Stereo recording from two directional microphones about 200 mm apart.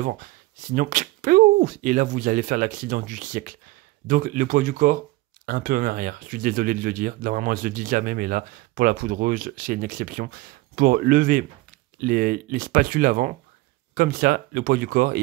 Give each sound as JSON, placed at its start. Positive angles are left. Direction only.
{"t": 0.0, "sound": "speech", "side_deg": -40}